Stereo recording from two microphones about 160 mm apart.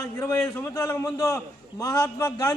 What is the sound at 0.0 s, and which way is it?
A man's voice, 20° left (ahead or behind).